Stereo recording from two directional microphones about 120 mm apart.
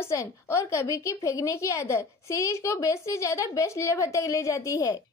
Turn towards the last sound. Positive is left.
turn(degrees=30)  # may be behind; listen again after turning